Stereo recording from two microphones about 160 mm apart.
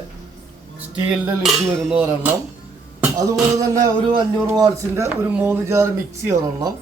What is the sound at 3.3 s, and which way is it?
Music, 25° right (ahead or behind).